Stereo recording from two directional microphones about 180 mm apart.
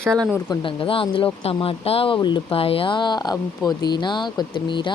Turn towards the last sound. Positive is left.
turn(degrees=25)  # may be behind; listen again after turning